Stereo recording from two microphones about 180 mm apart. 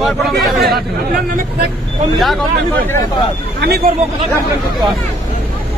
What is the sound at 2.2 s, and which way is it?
Speech, centre (ahead or behind).